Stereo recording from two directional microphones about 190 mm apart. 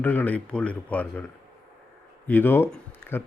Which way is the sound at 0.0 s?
10° left (ahead or behind).